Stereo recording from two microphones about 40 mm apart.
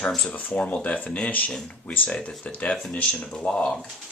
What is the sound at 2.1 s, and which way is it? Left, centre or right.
Speech, left.